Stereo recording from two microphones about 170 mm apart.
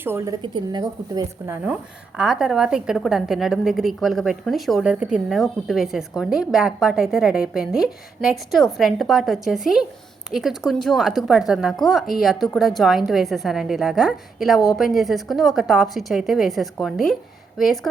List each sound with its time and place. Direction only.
0.0 s a woman's voice: 15° right (ahead or behind)
0.4 s a woman's voice: 25° right (ahead or behind)
1.6 s a woman's voice: 5° right (ahead or behind)